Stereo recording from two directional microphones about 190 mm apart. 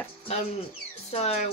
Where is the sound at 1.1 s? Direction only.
35° left (ahead or behind).